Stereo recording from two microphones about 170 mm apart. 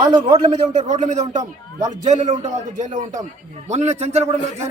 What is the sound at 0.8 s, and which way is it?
A man's voice, 45° right (ahead or behind).